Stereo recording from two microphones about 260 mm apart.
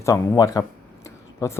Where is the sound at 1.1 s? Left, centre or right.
Centre.